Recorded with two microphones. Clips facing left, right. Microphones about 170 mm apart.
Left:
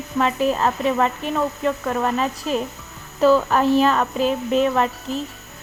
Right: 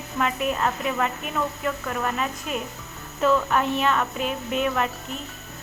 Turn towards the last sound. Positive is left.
turn(degrees=35)  # may be behind; listen again after turning